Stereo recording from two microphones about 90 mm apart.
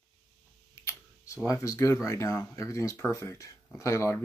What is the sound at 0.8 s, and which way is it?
Speech, 40° left (ahead or behind).